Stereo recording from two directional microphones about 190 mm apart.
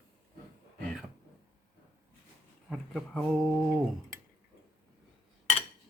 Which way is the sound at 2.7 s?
5° left (ahead or behind).